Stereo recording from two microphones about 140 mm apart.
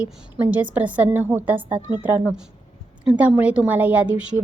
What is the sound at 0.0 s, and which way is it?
A woman's voice, 10° right (ahead or behind).